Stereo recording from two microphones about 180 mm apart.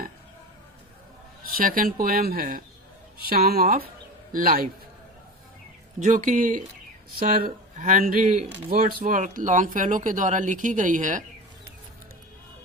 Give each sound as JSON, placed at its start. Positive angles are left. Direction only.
{"t": 1.5, "sound": "speech", "side_deg": -50}
{"t": 6.0, "sound": "speech", "side_deg": -45}